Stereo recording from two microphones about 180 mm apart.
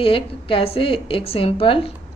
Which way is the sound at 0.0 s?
30° left (ahead or behind).